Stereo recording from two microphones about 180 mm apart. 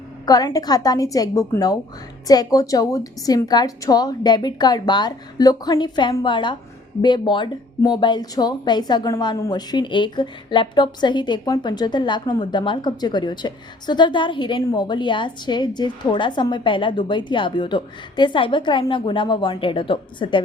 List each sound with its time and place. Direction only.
0.3 s a woman's voice: 20° left (ahead or behind)